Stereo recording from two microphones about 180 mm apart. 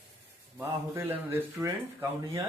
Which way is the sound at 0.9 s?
10° right (ahead or behind).